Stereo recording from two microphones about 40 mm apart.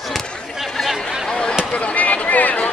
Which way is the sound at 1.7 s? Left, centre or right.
Left.